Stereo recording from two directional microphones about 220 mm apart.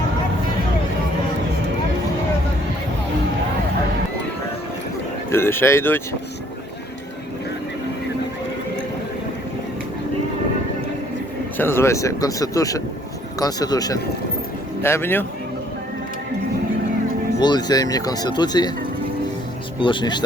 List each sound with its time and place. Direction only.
5.3 s speech: 10° left (ahead or behind)
11.5 s speech: 10° left (ahead or behind)
17.4 s speech: 20° left (ahead or behind)
19.8 s speech: 20° left (ahead or behind)